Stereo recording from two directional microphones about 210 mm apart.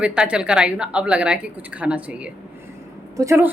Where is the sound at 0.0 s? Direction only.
5° right (ahead or behind).